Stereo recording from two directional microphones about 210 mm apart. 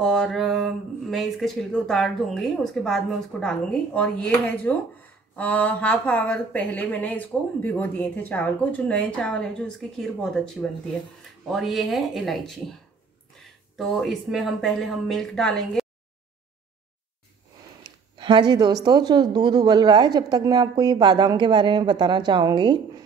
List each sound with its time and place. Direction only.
0.0 s a woman's voice: centre (ahead or behind)
18.1 s speech: 20° right (ahead or behind)